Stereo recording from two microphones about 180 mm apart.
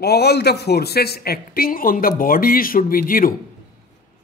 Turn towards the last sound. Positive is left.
turn(degrees=50)  # may be behind; listen again after turning